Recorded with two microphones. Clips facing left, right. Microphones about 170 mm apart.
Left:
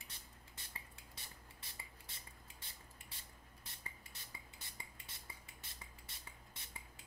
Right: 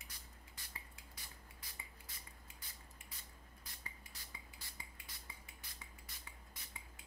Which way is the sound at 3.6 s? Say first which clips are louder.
Left 1 dB; 20° left (ahead or behind).